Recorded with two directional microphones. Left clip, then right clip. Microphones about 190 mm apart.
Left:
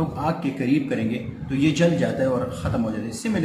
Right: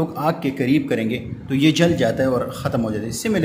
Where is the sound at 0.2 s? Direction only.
50° right (ahead or behind).